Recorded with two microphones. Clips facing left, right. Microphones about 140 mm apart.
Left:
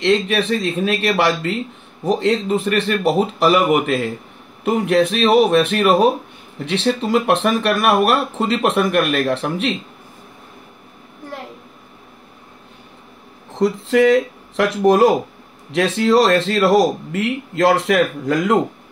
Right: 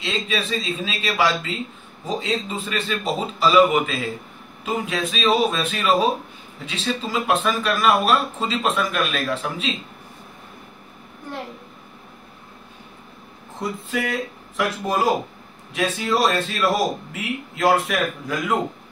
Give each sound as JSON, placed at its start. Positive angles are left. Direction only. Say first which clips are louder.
{"t": 0.0, "sound": "a man's voice", "louder": "left 9 dB", "side_deg": 70}
{"t": 13.6, "sound": "a man's voice", "louder": "left 11 dB", "side_deg": 80}